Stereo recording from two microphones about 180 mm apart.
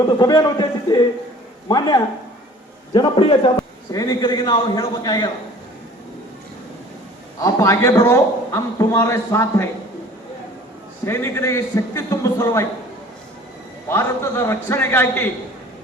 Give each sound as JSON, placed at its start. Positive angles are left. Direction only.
{"t": 0.2, "sound": "a man's voice", "side_deg": 20}
{"t": 7.4, "sound": "a man's voice", "side_deg": 15}
{"t": 11.0, "sound": "a man's voice", "side_deg": 15}
{"t": 13.9, "sound": "a man's voice", "side_deg": 15}